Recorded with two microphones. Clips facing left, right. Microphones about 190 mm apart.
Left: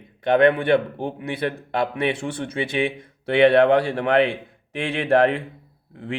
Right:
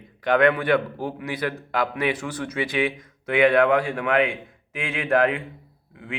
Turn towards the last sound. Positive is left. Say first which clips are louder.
# left 5 dB
turn(degrees=35)  # may be behind; listen again after turning